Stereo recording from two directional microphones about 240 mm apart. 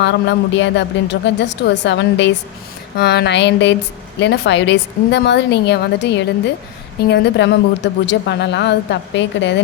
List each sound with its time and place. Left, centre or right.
0.0 s a woman's voice: left